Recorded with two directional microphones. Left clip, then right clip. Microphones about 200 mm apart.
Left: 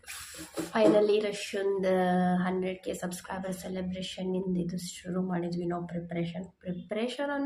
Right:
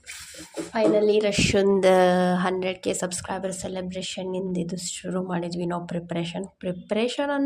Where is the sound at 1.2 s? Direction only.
45° right (ahead or behind).